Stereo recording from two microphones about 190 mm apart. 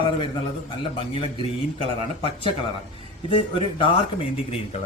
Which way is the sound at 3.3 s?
30° left (ahead or behind).